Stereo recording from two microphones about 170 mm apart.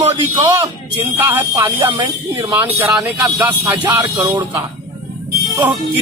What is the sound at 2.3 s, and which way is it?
Speech, 15° right (ahead or behind).